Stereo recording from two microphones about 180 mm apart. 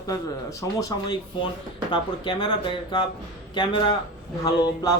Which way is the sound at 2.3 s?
25° left (ahead or behind).